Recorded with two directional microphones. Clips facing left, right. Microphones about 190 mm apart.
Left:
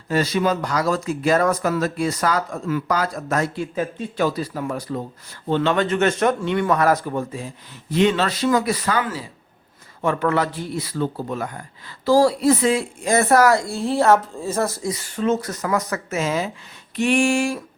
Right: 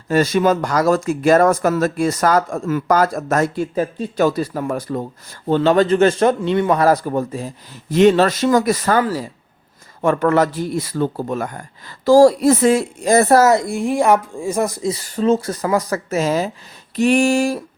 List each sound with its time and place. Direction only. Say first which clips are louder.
0.1 s speech: right 5 dB; 50° right (ahead or behind)
5.5 s a man's voice: right 6 dB; 40° right (ahead or behind)
13.4 s speech: right 3 dB; 20° right (ahead or behind)
14.9 s a man's voice: right 5 dB; 35° right (ahead or behind)